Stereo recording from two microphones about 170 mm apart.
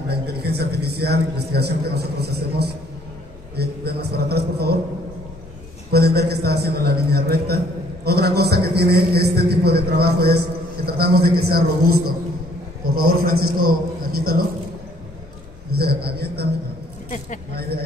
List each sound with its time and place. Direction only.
0.1 s a man's voice: 70° right (ahead or behind)
5.9 s a man's voice: 70° right (ahead or behind)
15.8 s a man's voice: 70° right (ahead or behind)
17.1 s speech: 50° left (ahead or behind)